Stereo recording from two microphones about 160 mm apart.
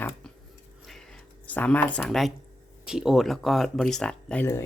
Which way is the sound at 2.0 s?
Centre (ahead or behind).